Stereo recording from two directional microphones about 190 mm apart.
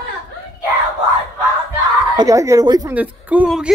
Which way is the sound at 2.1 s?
20° right (ahead or behind).